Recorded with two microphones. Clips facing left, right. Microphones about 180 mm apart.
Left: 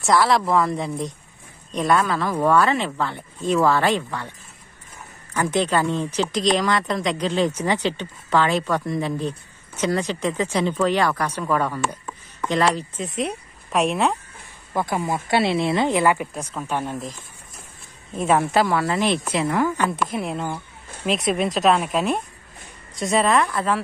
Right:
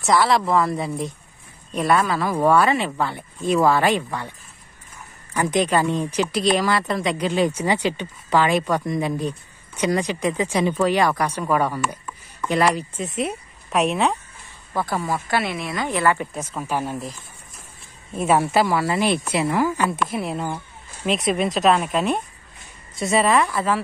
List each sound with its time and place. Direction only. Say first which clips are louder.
0.0 s speech: even; centre (ahead or behind)
5.3 s speech: right 1 dB; 15° right (ahead or behind)
14.7 s speech: left 1 dB; 15° left (ahead or behind)
16.3 s speech: right 1 dB; 10° right (ahead or behind)
18.1 s speech: even; 10° right (ahead or behind)